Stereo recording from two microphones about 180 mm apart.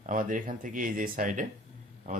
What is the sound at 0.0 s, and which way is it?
Speech, 45° right (ahead or behind).